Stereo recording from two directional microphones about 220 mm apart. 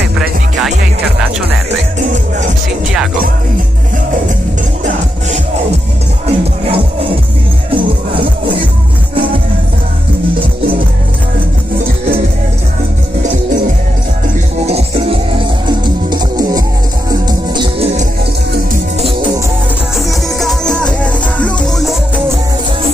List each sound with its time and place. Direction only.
6.2 s music: 25° right (ahead or behind)
14.7 s music: 25° right (ahead or behind)
20.1 s music: centre (ahead or behind)